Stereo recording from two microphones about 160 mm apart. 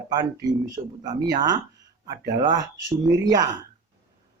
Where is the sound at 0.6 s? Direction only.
25° right (ahead or behind).